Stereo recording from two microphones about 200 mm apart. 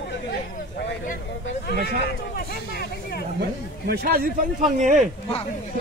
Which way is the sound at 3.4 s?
50° right (ahead or behind).